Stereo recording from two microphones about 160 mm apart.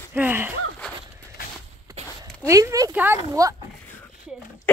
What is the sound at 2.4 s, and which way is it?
Speech, 20° right (ahead or behind).